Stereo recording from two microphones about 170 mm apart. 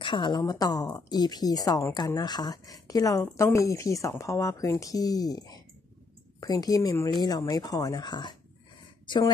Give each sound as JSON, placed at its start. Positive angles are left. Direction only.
{"t": 0.0, "sound": "a woman's voice", "side_deg": 30}